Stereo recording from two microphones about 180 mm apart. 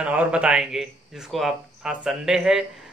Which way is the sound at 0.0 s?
10° right (ahead or behind).